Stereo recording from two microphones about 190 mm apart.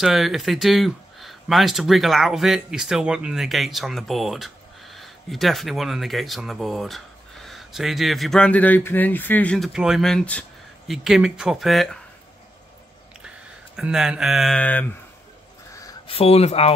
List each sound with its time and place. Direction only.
0.0 s speech: centre (ahead or behind)
13.7 s speech: centre (ahead or behind)
16.1 s speech: 30° left (ahead or behind)